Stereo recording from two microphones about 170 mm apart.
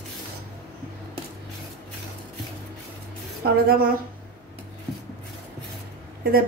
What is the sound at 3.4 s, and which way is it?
Speech, 60° right (ahead or behind).